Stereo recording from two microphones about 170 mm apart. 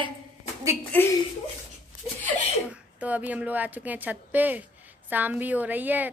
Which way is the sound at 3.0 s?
10° right (ahead or behind).